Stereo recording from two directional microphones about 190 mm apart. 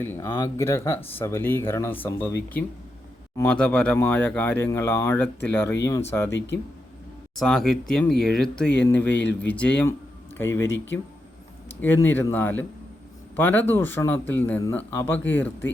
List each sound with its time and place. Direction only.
0.0 s speech: 10° left (ahead or behind)
7.3 s speech: 5° left (ahead or behind)
9.0 s speech: 65° left (ahead or behind)
9.5 s speech: 5° left (ahead or behind)
11.8 s speech: 10° left (ahead or behind)